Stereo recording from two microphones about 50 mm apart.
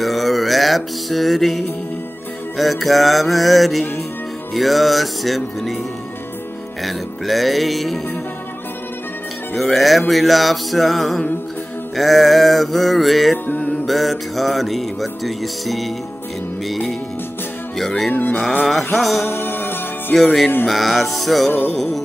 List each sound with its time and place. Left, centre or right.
0.0 s music: centre
6.8 s music: centre
9.6 s music: centre
13.5 s music: left
13.8 s music: centre
17.7 s music: centre
18.1 s music: left
18.9 s music: centre
19.2 s music: left
20.6 s music: centre
21.5 s music: left